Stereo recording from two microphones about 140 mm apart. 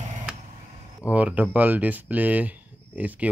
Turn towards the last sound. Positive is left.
turn(degrees=-10)  # may be behind; listen again after turning